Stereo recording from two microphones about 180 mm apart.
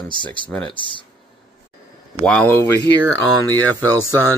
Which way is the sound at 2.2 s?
5° left (ahead or behind).